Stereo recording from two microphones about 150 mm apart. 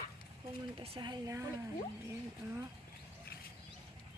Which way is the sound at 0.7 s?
40° right (ahead or behind).